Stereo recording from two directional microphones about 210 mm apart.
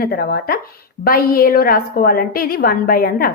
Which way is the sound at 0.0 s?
45° left (ahead or behind).